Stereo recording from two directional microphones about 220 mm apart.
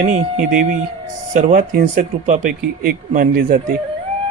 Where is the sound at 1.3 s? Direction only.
40° right (ahead or behind).